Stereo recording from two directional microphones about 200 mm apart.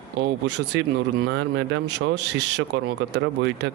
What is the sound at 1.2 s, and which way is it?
Speech, 65° right (ahead or behind).